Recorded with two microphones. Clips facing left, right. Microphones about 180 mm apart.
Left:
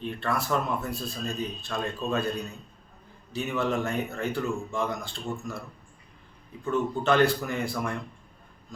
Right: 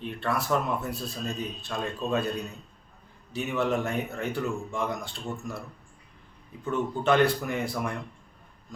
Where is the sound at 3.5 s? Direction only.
5° right (ahead or behind).